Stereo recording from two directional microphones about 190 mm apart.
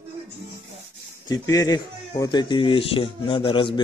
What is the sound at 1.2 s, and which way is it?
Speech, 20° left (ahead or behind).